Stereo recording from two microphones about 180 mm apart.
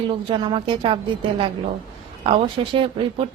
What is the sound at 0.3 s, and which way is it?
Speech, 25° right (ahead or behind).